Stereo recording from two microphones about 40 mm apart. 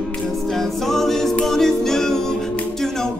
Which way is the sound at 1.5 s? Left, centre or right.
Centre.